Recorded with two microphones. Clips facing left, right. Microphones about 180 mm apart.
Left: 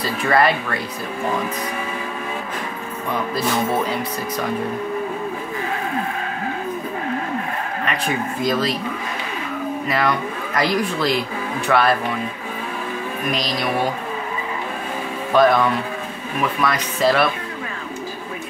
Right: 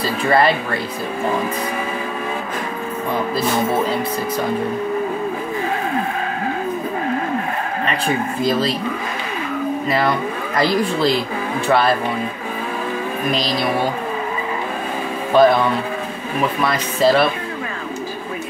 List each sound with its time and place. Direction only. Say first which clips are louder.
0.0 s speech: right 2 dB; 30° right (ahead or behind)
3.3 s speech: right 1 dB; 30° right (ahead or behind)
8.4 s speech: right 1 dB; 30° right (ahead or behind)
9.8 s speech: right 1 dB; 30° right (ahead or behind)
13.3 s speech: right 3 dB; 30° right (ahead or behind)
15.3 s speech: right 2 dB; 30° right (ahead or behind)